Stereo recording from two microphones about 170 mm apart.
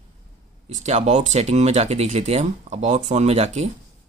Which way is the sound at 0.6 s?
40° right (ahead or behind).